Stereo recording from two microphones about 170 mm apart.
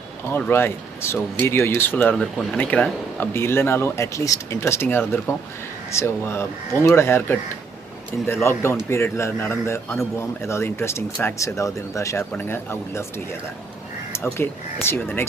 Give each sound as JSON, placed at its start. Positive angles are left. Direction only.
{"t": 0.3, "sound": "speech", "side_deg": 10}
{"t": 14.1, "sound": "speech", "side_deg": 15}